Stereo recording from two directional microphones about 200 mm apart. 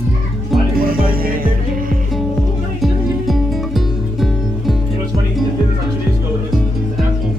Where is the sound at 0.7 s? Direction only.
45° right (ahead or behind).